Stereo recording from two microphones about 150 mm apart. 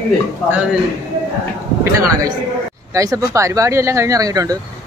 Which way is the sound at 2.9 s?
20° right (ahead or behind).